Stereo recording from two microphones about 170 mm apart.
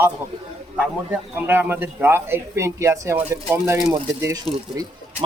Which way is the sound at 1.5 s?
10° right (ahead or behind).